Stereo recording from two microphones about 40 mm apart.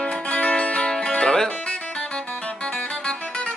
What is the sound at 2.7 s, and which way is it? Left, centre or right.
Music, left.